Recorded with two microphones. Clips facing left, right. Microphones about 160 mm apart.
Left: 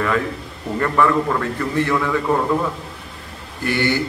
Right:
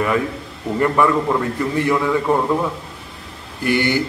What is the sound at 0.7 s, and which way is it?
Speech, 15° right (ahead or behind).